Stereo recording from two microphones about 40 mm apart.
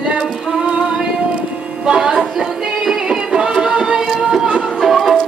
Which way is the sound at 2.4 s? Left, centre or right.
Centre.